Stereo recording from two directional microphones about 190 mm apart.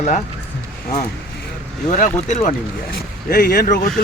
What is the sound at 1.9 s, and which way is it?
Speech, 40° left (ahead or behind).